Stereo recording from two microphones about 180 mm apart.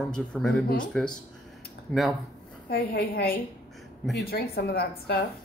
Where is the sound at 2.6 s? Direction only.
55° left (ahead or behind).